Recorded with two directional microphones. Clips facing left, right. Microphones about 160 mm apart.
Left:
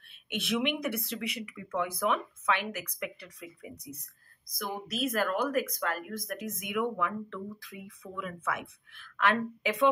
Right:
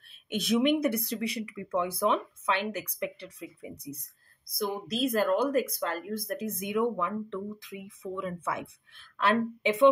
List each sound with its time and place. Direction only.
0.3 s speech: 40° right (ahead or behind)